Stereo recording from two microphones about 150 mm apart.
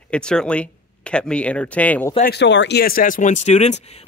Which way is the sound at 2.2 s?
85° left.